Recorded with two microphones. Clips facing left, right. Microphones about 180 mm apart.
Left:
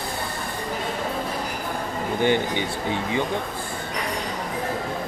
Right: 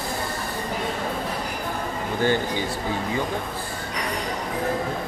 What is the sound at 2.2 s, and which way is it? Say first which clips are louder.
Speech: left 1 dB; 20° left (ahead or behind).